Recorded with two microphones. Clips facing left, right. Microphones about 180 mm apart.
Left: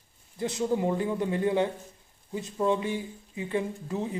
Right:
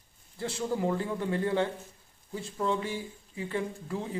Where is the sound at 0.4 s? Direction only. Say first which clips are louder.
Left 3 dB; 20° left (ahead or behind).